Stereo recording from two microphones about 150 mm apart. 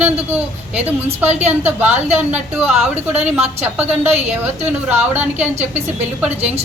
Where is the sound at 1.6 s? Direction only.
10° right (ahead or behind).